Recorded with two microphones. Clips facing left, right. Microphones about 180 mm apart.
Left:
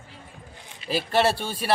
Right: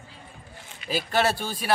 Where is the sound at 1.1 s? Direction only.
30° left (ahead or behind).